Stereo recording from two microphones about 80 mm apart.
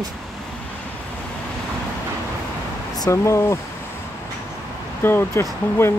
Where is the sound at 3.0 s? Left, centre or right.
Left.